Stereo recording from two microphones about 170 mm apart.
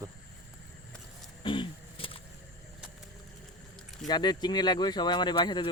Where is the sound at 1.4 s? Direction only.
30° left (ahead or behind).